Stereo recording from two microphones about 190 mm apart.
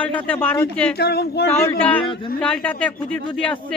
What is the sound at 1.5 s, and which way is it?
A man's voice, 10° left (ahead or behind).